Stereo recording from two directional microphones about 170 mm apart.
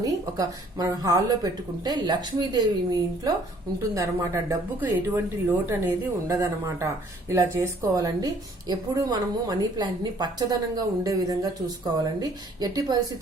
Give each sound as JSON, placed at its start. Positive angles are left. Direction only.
{"t": 0.0, "sound": "speech", "side_deg": -20}